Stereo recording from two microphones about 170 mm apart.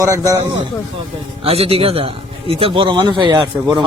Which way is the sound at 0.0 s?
20° right (ahead or behind).